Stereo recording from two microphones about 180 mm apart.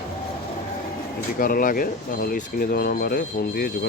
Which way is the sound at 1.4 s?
50° left (ahead or behind).